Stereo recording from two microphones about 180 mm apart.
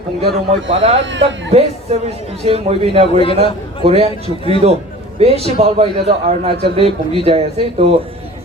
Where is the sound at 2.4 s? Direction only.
35° right (ahead or behind).